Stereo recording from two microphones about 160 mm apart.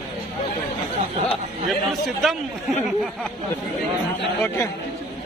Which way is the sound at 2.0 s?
Centre (ahead or behind).